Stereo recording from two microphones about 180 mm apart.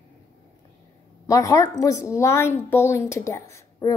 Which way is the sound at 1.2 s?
20° left (ahead or behind).